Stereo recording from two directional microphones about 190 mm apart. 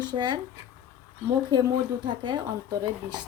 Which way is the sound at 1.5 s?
25° right (ahead or behind).